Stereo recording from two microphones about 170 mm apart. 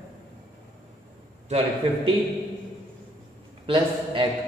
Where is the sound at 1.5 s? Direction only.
40° right (ahead or behind).